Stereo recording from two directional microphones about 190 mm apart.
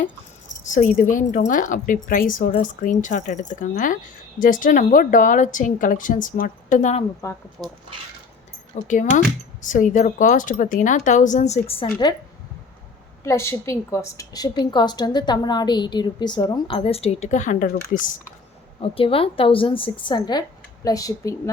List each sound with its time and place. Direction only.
0.6 s a woman's voice: 40° left (ahead or behind)
7.2 s speech: 15° left (ahead or behind)
7.6 s speech: centre (ahead or behind)
8.7 s speech: 40° left (ahead or behind)
13.2 s a woman's voice: 15° left (ahead or behind); by 17.7 s 40° left (ahead or behind)
18.8 s a woman's voice: 30° left (ahead or behind)